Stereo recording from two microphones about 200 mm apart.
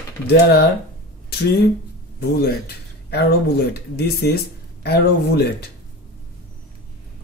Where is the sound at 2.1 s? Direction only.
50° left (ahead or behind).